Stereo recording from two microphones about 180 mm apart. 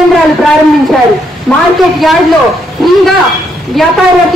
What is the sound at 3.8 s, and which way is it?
Speech, centre (ahead or behind).